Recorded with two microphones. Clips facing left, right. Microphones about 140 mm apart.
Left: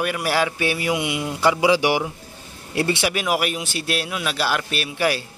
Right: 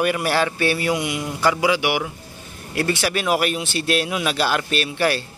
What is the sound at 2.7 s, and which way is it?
Speech, 20° left (ahead or behind).